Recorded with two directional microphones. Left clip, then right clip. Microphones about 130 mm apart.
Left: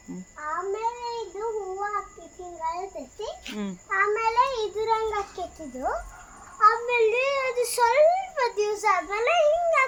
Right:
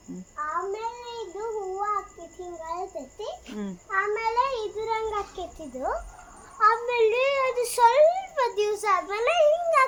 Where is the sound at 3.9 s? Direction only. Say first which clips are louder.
Left 2 dB; 45° left (ahead or behind).